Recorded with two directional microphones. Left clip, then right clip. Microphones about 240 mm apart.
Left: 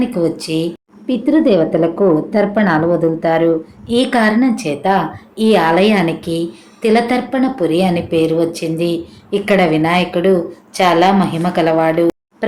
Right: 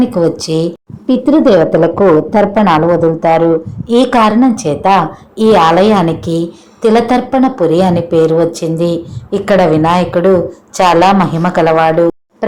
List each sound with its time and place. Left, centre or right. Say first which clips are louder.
0.0 s speech: right 5 dB; right